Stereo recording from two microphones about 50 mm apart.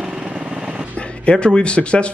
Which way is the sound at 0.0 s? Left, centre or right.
Centre.